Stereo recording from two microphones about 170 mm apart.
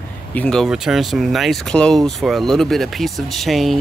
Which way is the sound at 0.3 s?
5° left (ahead or behind).